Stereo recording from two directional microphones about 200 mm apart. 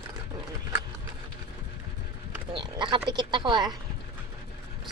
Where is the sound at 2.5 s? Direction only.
25° right (ahead or behind).